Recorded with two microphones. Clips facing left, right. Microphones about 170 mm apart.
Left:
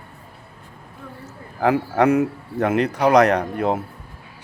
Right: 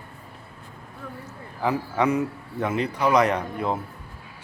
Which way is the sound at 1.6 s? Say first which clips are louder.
Left 6 dB; 65° left (ahead or behind).